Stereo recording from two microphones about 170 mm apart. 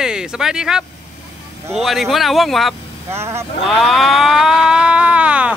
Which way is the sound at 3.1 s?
15° right (ahead or behind).